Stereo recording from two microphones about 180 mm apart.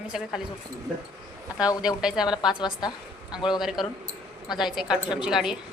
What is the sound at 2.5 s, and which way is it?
Speech, 25° left (ahead or behind).